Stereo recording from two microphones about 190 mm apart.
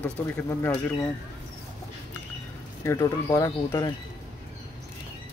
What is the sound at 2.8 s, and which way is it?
Speech, 15° left (ahead or behind).